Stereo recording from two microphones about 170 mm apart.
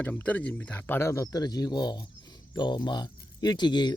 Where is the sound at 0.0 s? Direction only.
10° left (ahead or behind).